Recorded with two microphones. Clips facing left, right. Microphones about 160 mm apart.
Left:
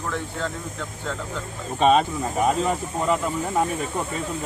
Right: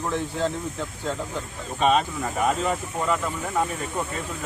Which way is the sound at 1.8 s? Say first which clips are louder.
Left 3 dB; 35° left (ahead or behind).